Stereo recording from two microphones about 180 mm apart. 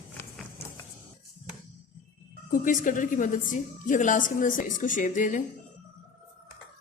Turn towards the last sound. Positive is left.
turn(degrees=45)  # may be behind; listen again after turning